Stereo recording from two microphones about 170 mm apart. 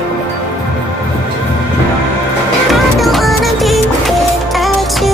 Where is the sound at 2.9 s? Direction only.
Centre (ahead or behind).